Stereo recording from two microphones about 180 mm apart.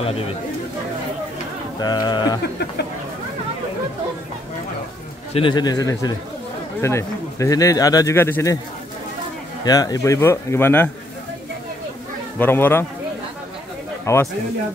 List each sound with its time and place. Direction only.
1.8 s speech: 20° left (ahead or behind)
5.3 s speech: 25° left (ahead or behind)
9.7 s speech: 20° left (ahead or behind)
12.4 s speech: 10° left (ahead or behind)
14.1 s speech: 15° left (ahead or behind)